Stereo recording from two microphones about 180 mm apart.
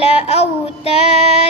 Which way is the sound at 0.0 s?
35° left (ahead or behind).